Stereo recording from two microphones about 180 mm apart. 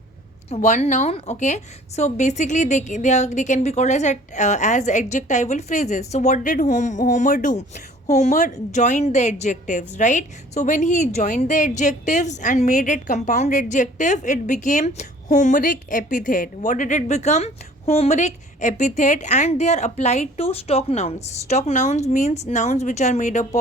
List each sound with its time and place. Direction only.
0.5 s a woman's voice: 40° left (ahead or behind)